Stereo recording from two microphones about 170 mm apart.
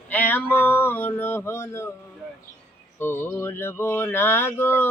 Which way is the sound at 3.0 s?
15° left (ahead or behind).